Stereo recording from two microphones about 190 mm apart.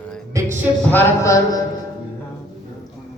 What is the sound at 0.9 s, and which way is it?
Speech, 15° left (ahead or behind).